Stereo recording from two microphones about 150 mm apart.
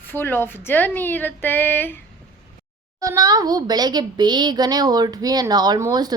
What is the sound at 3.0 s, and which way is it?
Speech, 20° right (ahead or behind).